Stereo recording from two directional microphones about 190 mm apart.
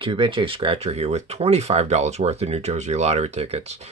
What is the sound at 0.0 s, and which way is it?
Speech, 25° right (ahead or behind).